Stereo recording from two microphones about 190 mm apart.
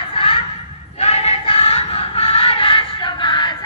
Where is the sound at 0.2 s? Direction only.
30° left (ahead or behind).